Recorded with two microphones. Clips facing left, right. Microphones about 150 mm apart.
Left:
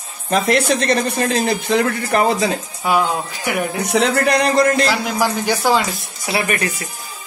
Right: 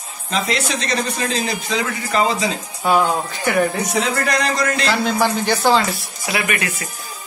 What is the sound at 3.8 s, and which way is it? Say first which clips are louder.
A man's voice: left 4 dB; 65° left (ahead or behind).